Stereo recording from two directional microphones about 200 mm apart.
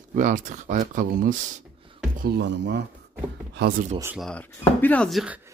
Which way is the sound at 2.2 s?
55° right (ahead or behind).